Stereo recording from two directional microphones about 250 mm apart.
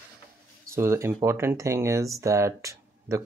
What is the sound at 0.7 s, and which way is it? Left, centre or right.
Speech, centre.